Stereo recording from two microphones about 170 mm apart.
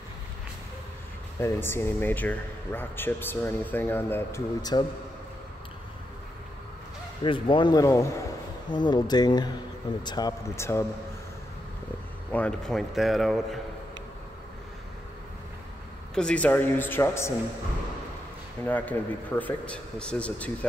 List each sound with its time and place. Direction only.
1.4 s speech: 15° left (ahead or behind)
4.6 s speech: 25° left (ahead or behind)
7.2 s speech: 30° left (ahead or behind)
12.3 s a man's voice: 5° left (ahead or behind)
16.2 s speech: 5° left (ahead or behind)
18.6 s speech: 10° left (ahead or behind)